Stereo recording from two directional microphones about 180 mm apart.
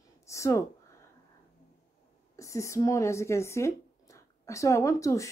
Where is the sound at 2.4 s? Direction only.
15° left (ahead or behind).